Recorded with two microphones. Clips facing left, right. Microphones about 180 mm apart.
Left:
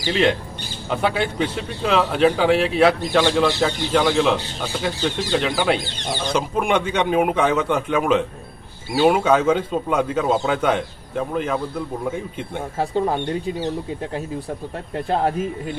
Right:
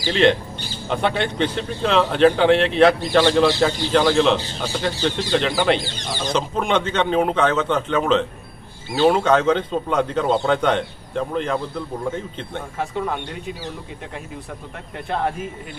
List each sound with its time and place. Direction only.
0.1 s a man's voice: 5° left (ahead or behind)
12.7 s speech: 30° left (ahead or behind)